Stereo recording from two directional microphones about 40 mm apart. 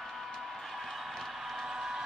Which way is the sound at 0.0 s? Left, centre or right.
Centre.